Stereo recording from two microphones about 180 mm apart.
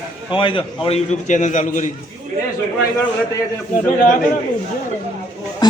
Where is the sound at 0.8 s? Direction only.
40° left (ahead or behind).